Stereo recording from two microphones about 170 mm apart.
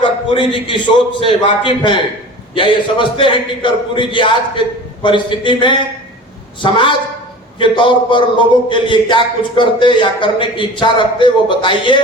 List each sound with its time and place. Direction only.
0.0 s speech: 30° left (ahead or behind)